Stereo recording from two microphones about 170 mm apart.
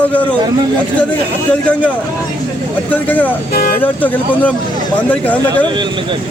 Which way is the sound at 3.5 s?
55° left (ahead or behind).